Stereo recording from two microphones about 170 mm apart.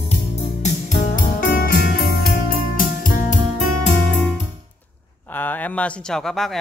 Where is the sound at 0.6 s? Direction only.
50° left (ahead or behind).